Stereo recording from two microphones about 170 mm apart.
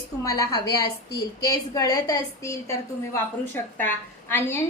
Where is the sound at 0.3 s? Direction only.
20° left (ahead or behind).